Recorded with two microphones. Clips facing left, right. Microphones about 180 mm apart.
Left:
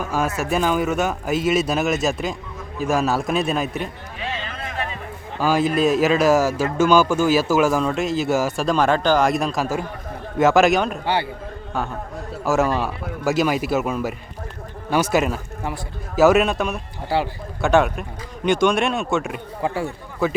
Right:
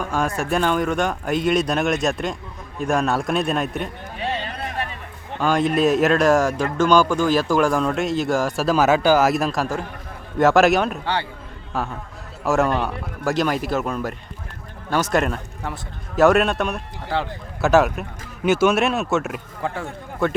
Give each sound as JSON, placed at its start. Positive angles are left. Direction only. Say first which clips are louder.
{"t": 0.0, "sound": "speech", "louder": "even", "side_deg": 5}
{"t": 5.4, "sound": "speech", "louder": "even", "side_deg": 5}
{"t": 11.0, "sound": "a man's voice", "louder": "left 3 dB", "side_deg": 10}
{"t": 12.5, "sound": "a man's voice", "louder": "even", "side_deg": 0}